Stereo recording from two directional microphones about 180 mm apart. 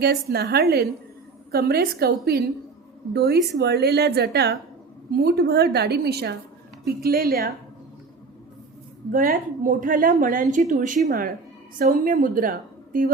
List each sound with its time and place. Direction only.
0.0 s a woman's voice: 60° right (ahead or behind)
9.1 s a woman's voice: 45° right (ahead or behind)